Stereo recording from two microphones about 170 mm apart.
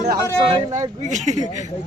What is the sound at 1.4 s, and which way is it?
Speech, 45° left (ahead or behind).